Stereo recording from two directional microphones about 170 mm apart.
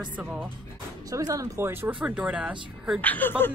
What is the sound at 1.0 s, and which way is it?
Speech, 20° right (ahead or behind).